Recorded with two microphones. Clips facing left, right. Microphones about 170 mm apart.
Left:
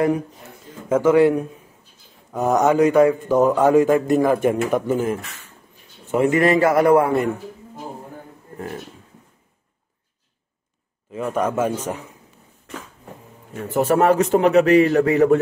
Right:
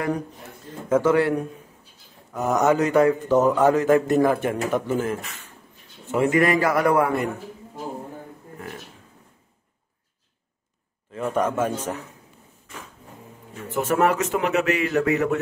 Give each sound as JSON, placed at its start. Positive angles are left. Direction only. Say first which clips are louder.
{"t": 0.8, "sound": "speech", "louder": "left 4 dB", "side_deg": 10}
{"t": 6.1, "sound": "a man's voice", "louder": "left 3 dB", "side_deg": 25}
{"t": 11.1, "sound": "speech", "louder": "left 2 dB", "side_deg": 5}
{"t": 13.7, "sound": "a man's voice", "louder": "left 5 dB", "side_deg": 35}